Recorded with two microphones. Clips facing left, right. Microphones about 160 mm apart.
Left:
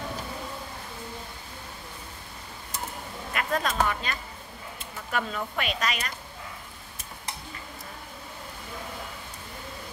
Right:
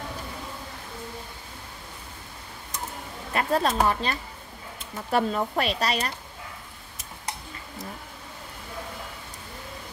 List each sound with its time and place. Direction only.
3.3 s speech: 30° right (ahead or behind)